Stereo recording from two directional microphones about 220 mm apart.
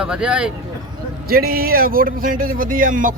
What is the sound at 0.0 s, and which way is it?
Speech, 5° right (ahead or behind).